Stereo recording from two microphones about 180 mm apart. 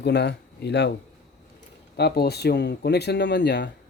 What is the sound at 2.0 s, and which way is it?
Speech, 65° left (ahead or behind).